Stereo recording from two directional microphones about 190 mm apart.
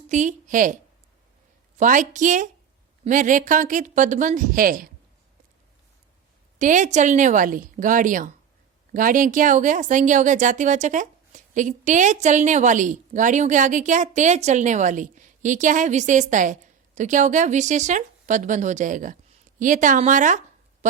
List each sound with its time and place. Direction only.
0.1 s a woman's voice: 40° right (ahead or behind)
1.8 s speech: 45° right (ahead or behind)
6.6 s speech: 40° right (ahead or behind)